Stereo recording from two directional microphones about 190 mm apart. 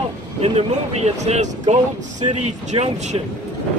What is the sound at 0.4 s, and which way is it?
Speech, 35° right (ahead or behind).